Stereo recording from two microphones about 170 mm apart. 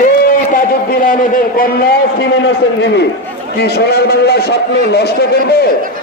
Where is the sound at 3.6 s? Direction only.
75° left (ahead or behind).